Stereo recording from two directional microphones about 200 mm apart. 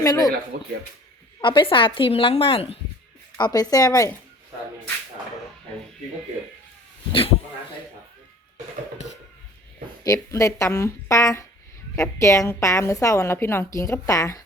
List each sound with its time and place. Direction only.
0.0 s speech: 20° left (ahead or behind)
1.4 s a woman's voice: 25° left (ahead or behind)
10.0 s a woman's voice: 15° left (ahead or behind)